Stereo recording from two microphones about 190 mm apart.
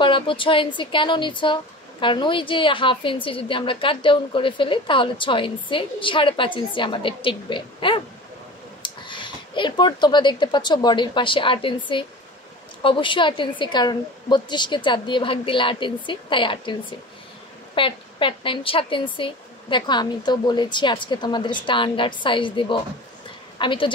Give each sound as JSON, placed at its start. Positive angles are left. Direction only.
{"t": 0.0, "sound": "speech", "side_deg": 25}
{"t": 17.7, "sound": "speech", "side_deg": 25}